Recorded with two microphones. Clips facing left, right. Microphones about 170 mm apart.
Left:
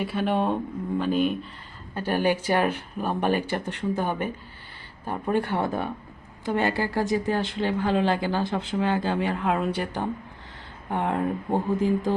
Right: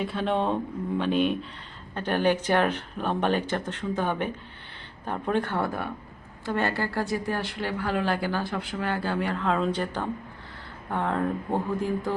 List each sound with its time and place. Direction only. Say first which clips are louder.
0.0 s speech: left 1 dB; 5° left (ahead or behind)